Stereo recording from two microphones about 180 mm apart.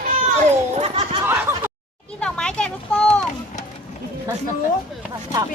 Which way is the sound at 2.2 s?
5° left (ahead or behind).